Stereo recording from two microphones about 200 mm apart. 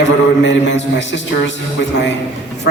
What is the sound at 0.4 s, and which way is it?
Speech, 65° left (ahead or behind).